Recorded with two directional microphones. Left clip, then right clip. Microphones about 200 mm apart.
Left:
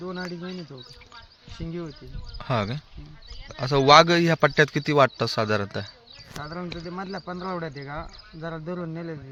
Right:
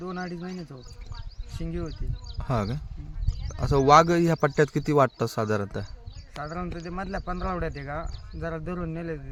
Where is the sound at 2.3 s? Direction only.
15° right (ahead or behind).